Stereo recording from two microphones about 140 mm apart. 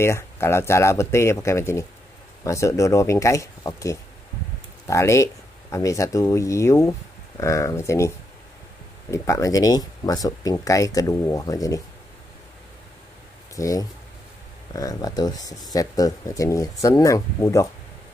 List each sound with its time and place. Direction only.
0.0 s speech: 20° left (ahead or behind)
9.1 s speech: 20° left (ahead or behind)
13.6 s speech: 25° left (ahead or behind)